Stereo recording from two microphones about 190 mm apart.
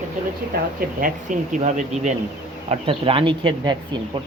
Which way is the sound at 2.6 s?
30° right (ahead or behind).